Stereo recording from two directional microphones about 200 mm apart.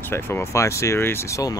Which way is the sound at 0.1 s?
10° left (ahead or behind).